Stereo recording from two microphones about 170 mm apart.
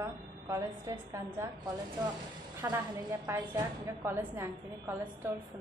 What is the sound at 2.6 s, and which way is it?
A woman's voice, 15° right (ahead or behind).